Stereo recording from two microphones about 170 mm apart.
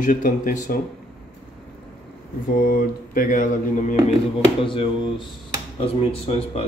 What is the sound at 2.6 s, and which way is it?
Mantra, 55° left (ahead or behind).